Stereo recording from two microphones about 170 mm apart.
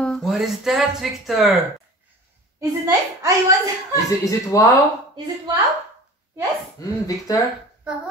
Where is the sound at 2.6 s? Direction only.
20° right (ahead or behind).